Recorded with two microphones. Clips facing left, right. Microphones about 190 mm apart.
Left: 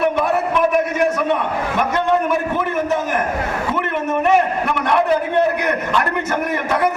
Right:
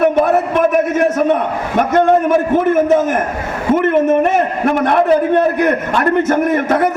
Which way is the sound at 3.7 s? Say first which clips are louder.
Right 13 dB; 50° right (ahead or behind).